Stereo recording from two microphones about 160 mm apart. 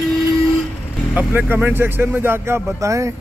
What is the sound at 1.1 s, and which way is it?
Speech, 10° right (ahead or behind).